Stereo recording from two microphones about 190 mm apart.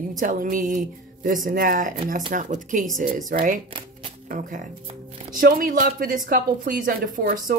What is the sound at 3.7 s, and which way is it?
Music, 30° right (ahead or behind).